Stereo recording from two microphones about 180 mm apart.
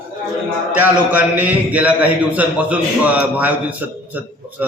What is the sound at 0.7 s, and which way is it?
A man's voice, 10° right (ahead or behind).